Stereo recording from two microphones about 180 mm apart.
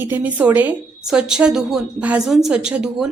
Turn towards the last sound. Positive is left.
turn(degrees=-5)  # may be behind; listen again after turning